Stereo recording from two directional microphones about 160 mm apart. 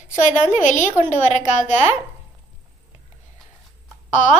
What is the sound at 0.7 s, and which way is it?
A woman's voice, 50° left (ahead or behind).